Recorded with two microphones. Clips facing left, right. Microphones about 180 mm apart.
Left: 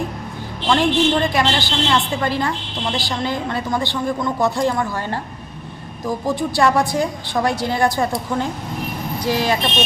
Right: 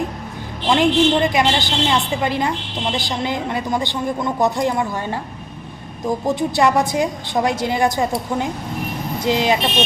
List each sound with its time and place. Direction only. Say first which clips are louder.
0.7 s a woman's voice: right 1 dB; 20° right (ahead or behind)
6.1 s a woman's voice: right 2 dB; 20° right (ahead or behind)
9.2 s a woman's voice: right 2 dB; 20° right (ahead or behind)